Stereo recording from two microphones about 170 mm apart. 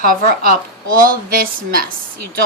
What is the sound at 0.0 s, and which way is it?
A woman's voice, 55° right (ahead or behind).